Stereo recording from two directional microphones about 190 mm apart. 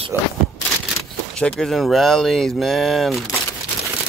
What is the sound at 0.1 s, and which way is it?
Speech, 10° right (ahead or behind).